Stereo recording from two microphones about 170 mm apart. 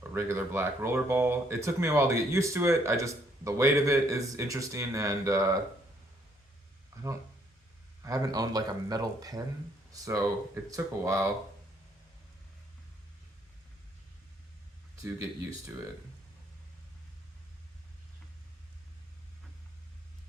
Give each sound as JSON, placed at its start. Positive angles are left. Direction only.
{"t": 0.1, "sound": "speech", "side_deg": -15}
{"t": 6.9, "sound": "a sound", "side_deg": -15}
{"t": 8.0, "sound": "a man's voice", "side_deg": -20}
{"t": 15.0, "sound": "speech", "side_deg": -15}